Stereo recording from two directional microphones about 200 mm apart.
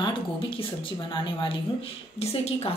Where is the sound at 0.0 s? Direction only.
25° left (ahead or behind).